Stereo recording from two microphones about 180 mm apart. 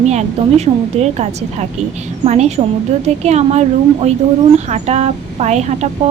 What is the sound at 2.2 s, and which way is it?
Speech, 35° right (ahead or behind).